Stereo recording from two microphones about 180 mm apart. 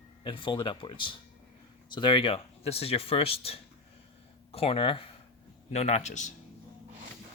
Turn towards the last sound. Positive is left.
turn(degrees=40)  # may be behind; listen again after turning